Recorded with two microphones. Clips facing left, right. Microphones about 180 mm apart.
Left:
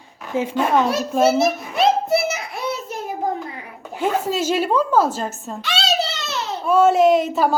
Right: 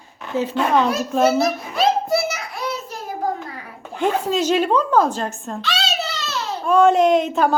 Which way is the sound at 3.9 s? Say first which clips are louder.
Right 1 dB; 5° left (ahead or behind).